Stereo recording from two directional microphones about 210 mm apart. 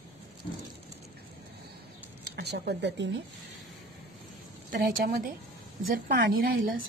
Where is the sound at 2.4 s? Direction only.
50° right (ahead or behind).